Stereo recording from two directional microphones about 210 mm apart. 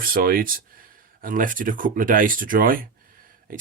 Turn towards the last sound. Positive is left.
turn(degrees=-40)  # may be behind; listen again after turning